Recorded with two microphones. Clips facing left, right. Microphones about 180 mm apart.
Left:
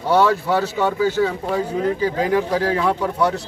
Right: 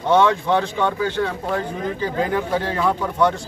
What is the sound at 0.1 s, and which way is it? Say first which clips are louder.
Speech: even; 5° left (ahead or behind).